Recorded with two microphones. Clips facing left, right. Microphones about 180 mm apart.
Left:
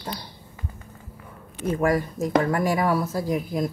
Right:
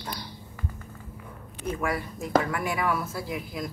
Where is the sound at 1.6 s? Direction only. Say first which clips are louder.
Left 7 dB; 40° left (ahead or behind).